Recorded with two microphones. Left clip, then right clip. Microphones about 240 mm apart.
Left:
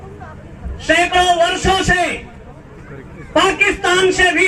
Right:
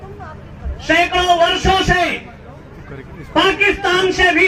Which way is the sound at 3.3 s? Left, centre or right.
Left.